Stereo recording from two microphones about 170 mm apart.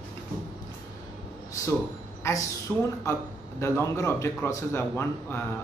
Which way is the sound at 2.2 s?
15° left (ahead or behind).